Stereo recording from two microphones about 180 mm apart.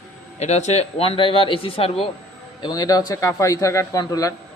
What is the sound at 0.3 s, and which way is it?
A man's voice, 40° left (ahead or behind).